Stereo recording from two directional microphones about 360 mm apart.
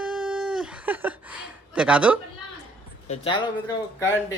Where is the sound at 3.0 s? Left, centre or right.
Centre.